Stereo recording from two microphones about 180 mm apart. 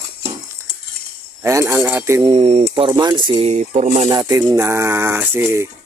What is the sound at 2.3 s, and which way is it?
Speech, 30° right (ahead or behind).